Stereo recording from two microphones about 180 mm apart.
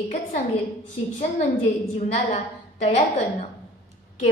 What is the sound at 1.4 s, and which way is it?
A woman's voice, 40° left (ahead or behind).